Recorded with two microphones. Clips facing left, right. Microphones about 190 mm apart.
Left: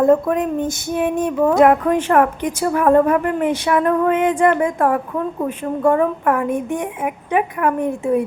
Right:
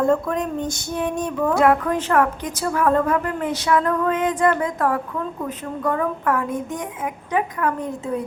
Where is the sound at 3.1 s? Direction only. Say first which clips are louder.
Left 5 dB; 15° left (ahead or behind).